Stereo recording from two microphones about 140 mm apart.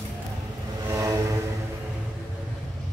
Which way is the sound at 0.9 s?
20° right (ahead or behind).